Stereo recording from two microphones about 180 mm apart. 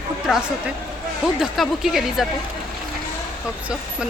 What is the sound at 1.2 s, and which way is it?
Speech, centre (ahead or behind).